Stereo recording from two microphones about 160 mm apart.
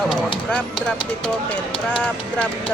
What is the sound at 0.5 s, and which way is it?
Speech, 10° left (ahead or behind).